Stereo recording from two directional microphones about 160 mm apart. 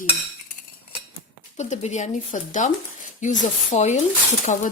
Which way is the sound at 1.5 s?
45° left (ahead or behind).